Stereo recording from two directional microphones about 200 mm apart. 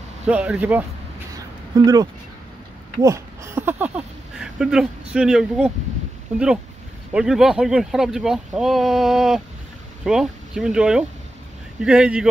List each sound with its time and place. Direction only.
0.3 s speech: 5° right (ahead or behind)
1.7 s speech: 20° right (ahead or behind)
3.0 s a sound: 15° right (ahead or behind)
5.1 s speech: 5° right (ahead or behind)
7.2 s speech: centre (ahead or behind)